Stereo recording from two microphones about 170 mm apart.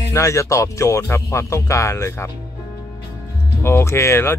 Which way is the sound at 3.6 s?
15° left (ahead or behind).